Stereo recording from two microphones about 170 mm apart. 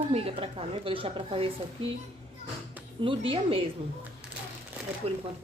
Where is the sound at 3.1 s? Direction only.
35° right (ahead or behind).